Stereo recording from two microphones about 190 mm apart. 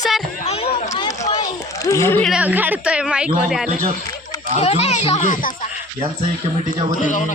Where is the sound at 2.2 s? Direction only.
5° right (ahead or behind).